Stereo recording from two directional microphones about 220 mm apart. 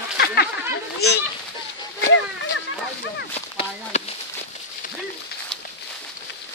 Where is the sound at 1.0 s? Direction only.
45° left (ahead or behind).